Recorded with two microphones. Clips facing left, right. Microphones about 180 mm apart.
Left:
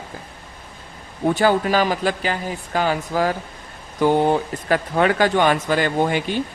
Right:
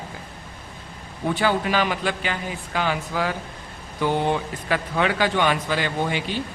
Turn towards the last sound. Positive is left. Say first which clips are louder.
# left 5 dB
turn(degrees=50)  # may be behind; listen again after turning